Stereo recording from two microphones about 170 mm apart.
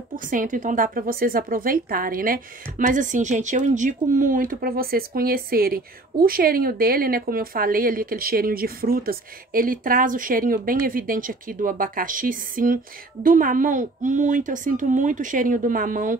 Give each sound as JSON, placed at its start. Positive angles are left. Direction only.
{"t": 0.1, "sound": "a woman's voice", "side_deg": -50}